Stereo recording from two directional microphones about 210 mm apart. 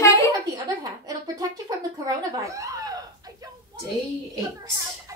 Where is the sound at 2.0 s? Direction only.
15° right (ahead or behind).